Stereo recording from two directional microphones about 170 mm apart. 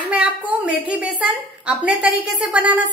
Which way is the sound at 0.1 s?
10° right (ahead or behind).